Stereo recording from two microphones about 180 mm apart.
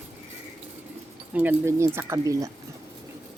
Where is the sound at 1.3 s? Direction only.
10° right (ahead or behind).